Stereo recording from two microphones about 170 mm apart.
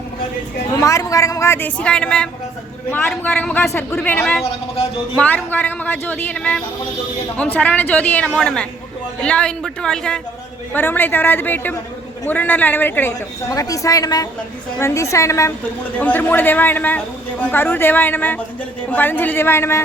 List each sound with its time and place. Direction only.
0.8 s a woman's voice: 20° left (ahead or behind)